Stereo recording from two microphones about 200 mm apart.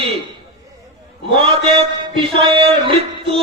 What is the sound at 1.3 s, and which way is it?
Speech, 30° right (ahead or behind).